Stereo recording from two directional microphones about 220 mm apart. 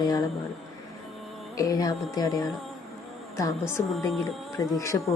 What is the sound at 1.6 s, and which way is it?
Speech, 15° left (ahead or behind).